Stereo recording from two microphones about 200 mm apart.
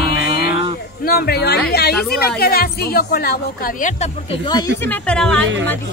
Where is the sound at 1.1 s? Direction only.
50° left (ahead or behind); by 4.7 s 20° left (ahead or behind).